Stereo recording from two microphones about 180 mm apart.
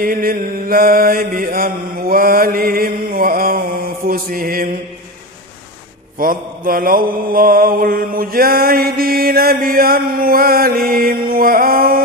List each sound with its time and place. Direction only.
0.0 s mantra: 55° right (ahead or behind)
6.1 s mantra: 50° right (ahead or behind)